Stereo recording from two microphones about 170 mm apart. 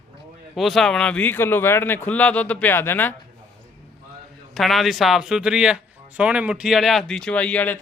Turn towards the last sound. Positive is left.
turn(degrees=10)  # may be behind; listen again after turning